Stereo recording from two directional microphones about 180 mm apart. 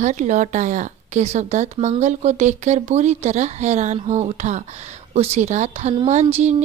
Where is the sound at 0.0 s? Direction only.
45° right (ahead or behind).